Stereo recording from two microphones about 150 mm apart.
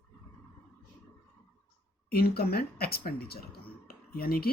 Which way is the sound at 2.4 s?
90° left.